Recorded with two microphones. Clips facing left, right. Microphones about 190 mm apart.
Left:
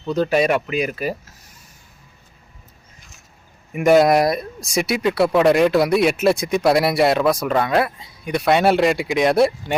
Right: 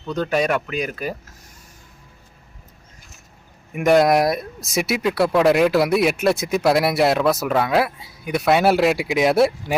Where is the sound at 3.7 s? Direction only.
Centre (ahead or behind).